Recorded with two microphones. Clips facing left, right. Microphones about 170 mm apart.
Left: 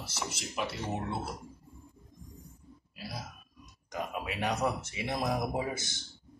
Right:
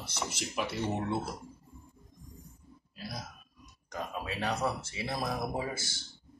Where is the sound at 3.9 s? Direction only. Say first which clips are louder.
Left 1 dB; 15° left (ahead or behind).